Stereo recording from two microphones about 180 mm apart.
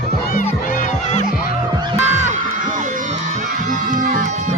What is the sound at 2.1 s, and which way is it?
Music, 40° right (ahead or behind).